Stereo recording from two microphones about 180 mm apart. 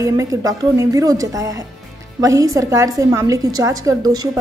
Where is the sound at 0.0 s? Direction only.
20° right (ahead or behind).